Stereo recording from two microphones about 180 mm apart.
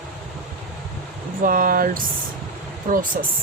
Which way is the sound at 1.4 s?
55° right (ahead or behind).